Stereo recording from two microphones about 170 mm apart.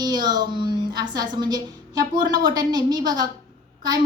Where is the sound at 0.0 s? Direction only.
25° right (ahead or behind).